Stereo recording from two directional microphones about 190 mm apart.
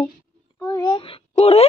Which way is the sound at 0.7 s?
30° left (ahead or behind).